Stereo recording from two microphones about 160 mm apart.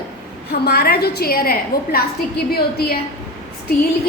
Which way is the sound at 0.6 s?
75° left (ahead or behind).